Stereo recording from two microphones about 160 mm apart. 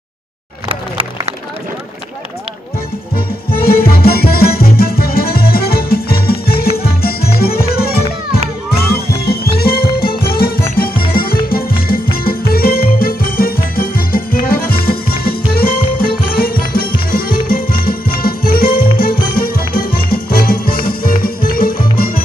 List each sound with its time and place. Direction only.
3.4 s music: 70° left (ahead or behind)